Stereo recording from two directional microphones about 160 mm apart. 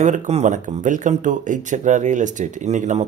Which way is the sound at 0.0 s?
50° right (ahead or behind).